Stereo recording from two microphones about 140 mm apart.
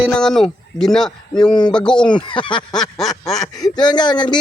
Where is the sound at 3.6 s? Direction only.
30° left (ahead or behind).